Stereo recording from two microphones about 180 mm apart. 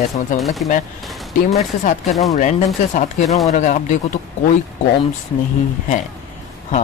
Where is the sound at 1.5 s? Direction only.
40° left (ahead or behind).